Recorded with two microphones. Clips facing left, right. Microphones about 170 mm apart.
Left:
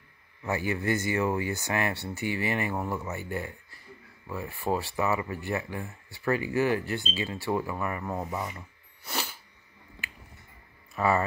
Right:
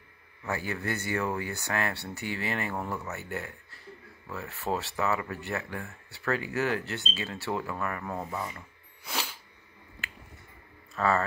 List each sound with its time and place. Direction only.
0.5 s speech: 15° left (ahead or behind)
11.0 s speech: 15° left (ahead or behind)